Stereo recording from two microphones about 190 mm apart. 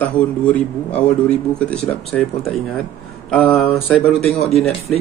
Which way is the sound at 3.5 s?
30° left (ahead or behind).